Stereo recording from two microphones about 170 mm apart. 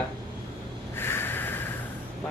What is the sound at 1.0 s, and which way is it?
Snort, 15° left (ahead or behind).